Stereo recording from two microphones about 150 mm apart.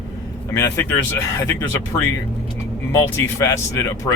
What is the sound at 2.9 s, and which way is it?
Speech, 15° left (ahead or behind).